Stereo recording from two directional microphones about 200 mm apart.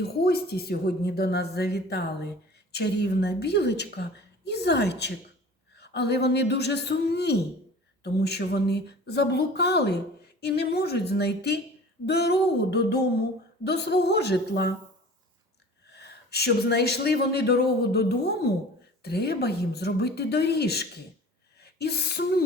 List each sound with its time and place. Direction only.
0.0 s speech: 50° left (ahead or behind)
15.9 s speech: 55° left (ahead or behind)
21.6 s a sound: 55° left (ahead or behind)